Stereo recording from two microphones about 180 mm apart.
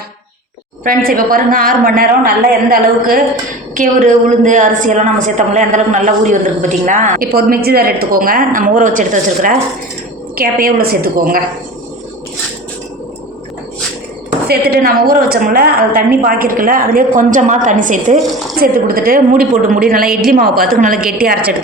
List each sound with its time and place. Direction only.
0.9 s a woman's voice: 50° right (ahead or behind)
14.4 s a woman's voice: 60° right (ahead or behind)